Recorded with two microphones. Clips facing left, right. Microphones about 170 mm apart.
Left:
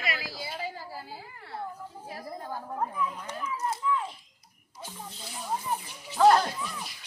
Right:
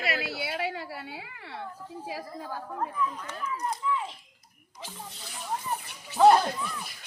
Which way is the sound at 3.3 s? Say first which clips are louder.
Even; 5° left (ahead or behind).